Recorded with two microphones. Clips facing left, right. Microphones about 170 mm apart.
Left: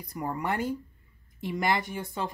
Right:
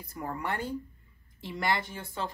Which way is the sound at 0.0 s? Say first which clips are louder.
Left 3 dB; 15° left (ahead or behind).